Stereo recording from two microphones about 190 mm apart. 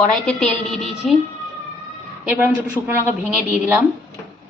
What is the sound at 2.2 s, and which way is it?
A woman's voice, 10° right (ahead or behind).